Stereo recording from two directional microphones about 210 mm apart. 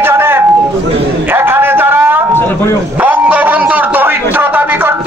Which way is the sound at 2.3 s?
10° left (ahead or behind).